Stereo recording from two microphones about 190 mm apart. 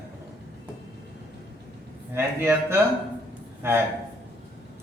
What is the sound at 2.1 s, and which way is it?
Speech, 10° right (ahead or behind).